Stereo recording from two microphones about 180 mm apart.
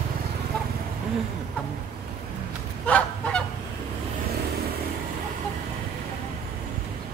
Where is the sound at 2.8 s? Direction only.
5° left (ahead or behind).